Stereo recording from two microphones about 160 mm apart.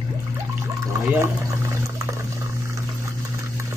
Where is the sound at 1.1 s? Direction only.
15° right (ahead or behind).